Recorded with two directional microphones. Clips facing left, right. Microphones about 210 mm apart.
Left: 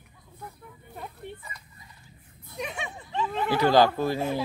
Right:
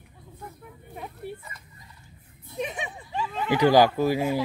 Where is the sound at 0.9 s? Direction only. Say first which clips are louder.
Right 3 dB; 5° right (ahead or behind).